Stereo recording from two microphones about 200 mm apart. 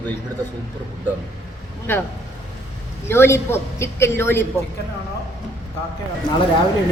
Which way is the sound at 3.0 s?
10° left (ahead or behind).